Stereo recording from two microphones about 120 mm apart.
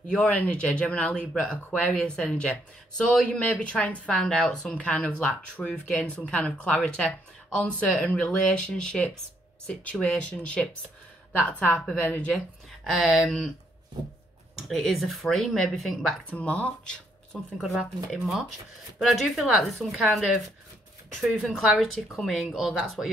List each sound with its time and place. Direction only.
0.0 s speech: 10° left (ahead or behind)
12.8 s speech: centre (ahead or behind)
14.7 s speech: centre (ahead or behind)
16.3 s speech: 10° left (ahead or behind)